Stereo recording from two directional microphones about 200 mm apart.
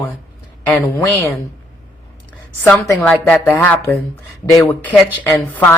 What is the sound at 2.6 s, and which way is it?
A woman's voice, 10° left (ahead or behind).